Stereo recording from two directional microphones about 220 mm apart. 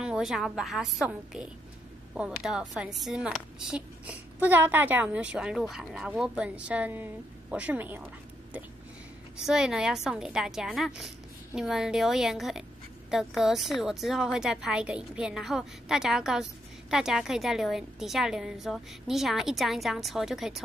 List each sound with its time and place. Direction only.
0.0 s speech: centre (ahead or behind)
9.5 s speech: 5° right (ahead or behind)